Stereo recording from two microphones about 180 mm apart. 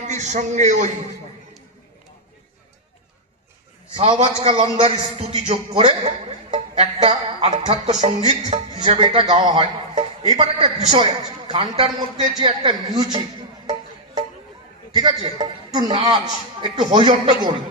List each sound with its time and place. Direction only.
0.0 s a man's voice: 40° right (ahead or behind)
3.9 s a man's voice: 35° right (ahead or behind)
5.8 s music: 35° right (ahead or behind)
6.8 s a man's voice: 35° right (ahead or behind)
9.0 s a man's voice: 25° right (ahead or behind)
14.9 s a man's voice: 25° right (ahead or behind)